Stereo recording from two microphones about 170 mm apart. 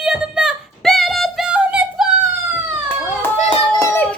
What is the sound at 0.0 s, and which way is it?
Music, 5° right (ahead or behind).